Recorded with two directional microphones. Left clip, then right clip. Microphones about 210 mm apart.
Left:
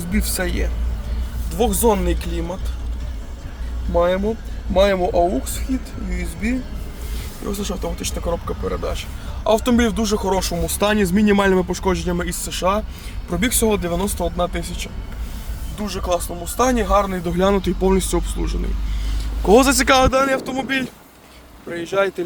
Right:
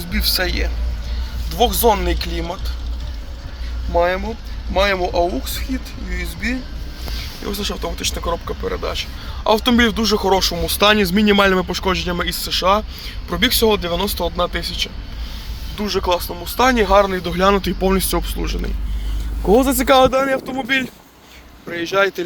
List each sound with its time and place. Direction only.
0.1 s a man's voice: 20° left (ahead or behind)
3.9 s speech: 15° left (ahead or behind)
7.6 s speech: 5° left (ahead or behind)
15.8 s speech: centre (ahead or behind)